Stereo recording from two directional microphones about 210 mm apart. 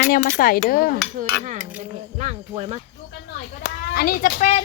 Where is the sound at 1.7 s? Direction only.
30° right (ahead or behind).